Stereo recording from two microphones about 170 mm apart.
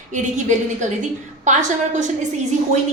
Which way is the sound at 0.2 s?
45° right (ahead or behind).